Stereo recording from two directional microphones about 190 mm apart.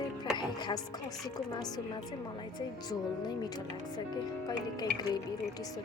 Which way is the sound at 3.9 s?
20° left (ahead or behind).